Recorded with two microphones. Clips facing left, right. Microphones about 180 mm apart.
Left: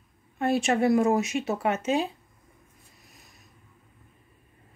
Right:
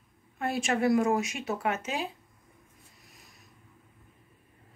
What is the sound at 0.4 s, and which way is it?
Speech, 25° left (ahead or behind).